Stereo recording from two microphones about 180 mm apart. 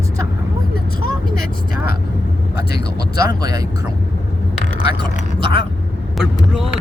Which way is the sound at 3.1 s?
20° right (ahead or behind).